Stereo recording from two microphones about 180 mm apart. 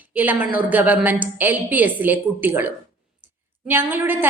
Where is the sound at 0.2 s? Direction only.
10° right (ahead or behind).